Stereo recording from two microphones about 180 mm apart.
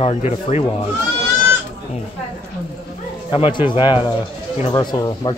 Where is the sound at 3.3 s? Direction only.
30° left (ahead or behind).